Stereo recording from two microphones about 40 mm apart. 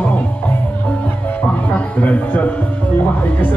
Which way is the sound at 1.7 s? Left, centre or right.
Left.